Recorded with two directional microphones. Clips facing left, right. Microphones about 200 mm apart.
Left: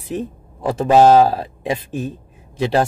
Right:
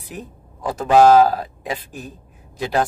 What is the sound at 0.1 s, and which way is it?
A man's voice, 25° left (ahead or behind).